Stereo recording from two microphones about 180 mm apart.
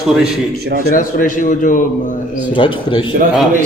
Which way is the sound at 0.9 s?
50° left (ahead or behind).